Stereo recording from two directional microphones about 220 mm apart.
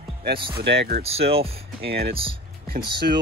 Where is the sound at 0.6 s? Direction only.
50° right (ahead or behind).